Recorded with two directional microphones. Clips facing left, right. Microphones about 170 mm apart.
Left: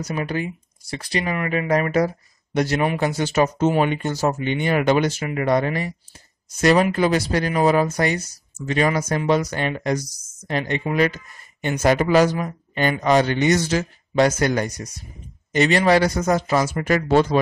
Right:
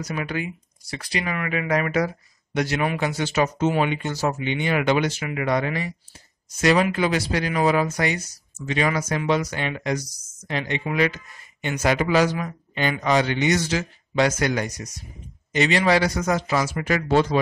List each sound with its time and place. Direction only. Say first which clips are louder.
0.0 s speech: left 3 dB; 35° left (ahead or behind)